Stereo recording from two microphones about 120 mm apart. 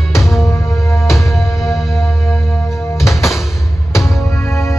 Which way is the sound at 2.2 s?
25° left (ahead or behind).